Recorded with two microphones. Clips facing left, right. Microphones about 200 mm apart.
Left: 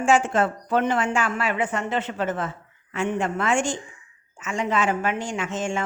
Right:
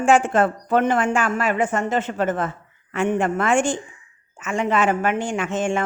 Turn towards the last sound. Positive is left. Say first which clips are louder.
# right 4 dB
turn(degrees=-55)  # may be behind; listen again after turning